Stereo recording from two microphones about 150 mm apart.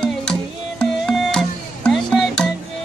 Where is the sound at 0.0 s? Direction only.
5° left (ahead or behind).